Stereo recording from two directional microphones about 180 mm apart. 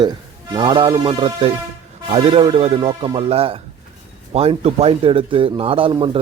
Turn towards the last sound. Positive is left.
turn(degrees=-30)  # may be behind; listen again after turning